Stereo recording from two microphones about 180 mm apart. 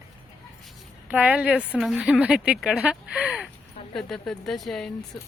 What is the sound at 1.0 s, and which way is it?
A woman's voice, 10° right (ahead or behind).